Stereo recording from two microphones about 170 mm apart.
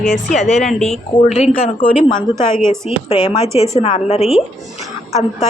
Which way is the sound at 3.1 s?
35° left (ahead or behind).